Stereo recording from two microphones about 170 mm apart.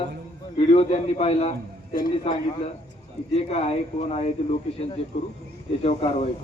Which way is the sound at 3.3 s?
40° left (ahead or behind).